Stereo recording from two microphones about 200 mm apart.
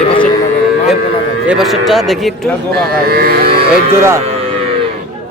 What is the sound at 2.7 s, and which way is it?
Speech, 50° right (ahead or behind).